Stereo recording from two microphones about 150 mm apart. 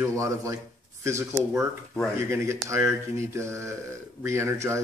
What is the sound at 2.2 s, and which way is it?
Speech, 20° right (ahead or behind).